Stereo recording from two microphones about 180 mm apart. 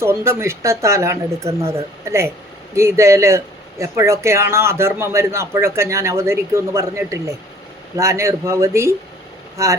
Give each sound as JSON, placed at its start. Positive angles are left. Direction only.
{"t": 0.0, "sound": "speech", "side_deg": -15}